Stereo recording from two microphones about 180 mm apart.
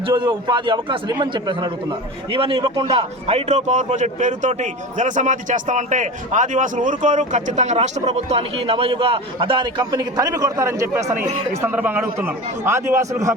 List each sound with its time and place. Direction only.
0.1 s a man's voice: 25° right (ahead or behind)
3.3 s a man's voice: 40° right (ahead or behind); by 13.3 s 15° right (ahead or behind)